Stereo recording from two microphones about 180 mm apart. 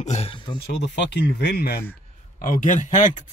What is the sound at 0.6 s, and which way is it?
Speech, 70° left (ahead or behind).